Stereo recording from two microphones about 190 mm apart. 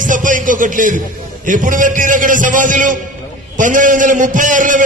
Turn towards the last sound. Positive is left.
turn(degrees=-40)  # may be behind; listen again after turning